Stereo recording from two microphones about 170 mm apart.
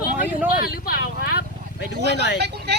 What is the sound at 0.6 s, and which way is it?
Vehicle, 65° left (ahead or behind).